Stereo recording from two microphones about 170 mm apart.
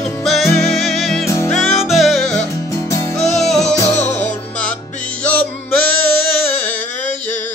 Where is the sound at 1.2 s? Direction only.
15° left (ahead or behind).